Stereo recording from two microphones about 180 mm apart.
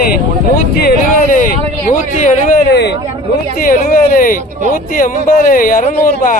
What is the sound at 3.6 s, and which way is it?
Speech, 50° left (ahead or behind).